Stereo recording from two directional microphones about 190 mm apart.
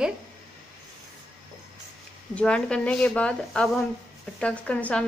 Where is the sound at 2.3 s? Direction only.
5° left (ahead or behind).